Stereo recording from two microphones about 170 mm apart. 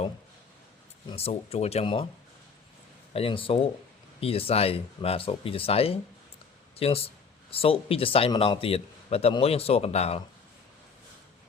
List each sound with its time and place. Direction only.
1.1 s speech: 35° left (ahead or behind)
3.1 s speech: 35° left (ahead or behind)